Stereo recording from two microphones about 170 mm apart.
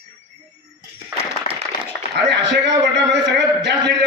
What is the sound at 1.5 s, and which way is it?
Applause, 45° left (ahead or behind).